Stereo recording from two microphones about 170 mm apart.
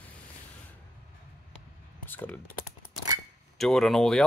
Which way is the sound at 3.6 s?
5° left (ahead or behind).